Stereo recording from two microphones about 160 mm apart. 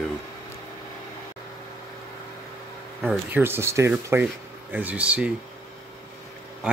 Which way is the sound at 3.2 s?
15° right (ahead or behind).